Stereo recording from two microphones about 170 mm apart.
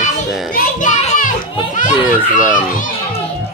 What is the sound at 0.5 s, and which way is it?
Speech, 50° left (ahead or behind).